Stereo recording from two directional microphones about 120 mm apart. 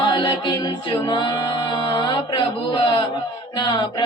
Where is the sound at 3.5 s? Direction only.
40° left (ahead or behind).